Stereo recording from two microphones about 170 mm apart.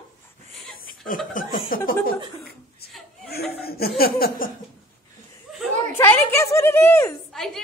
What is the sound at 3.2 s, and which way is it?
Laughter, 70° left (ahead or behind).